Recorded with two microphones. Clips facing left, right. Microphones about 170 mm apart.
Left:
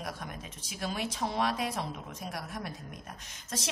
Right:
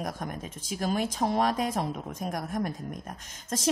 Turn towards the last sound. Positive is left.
turn(degrees=-45)  # may be behind; listen again after turning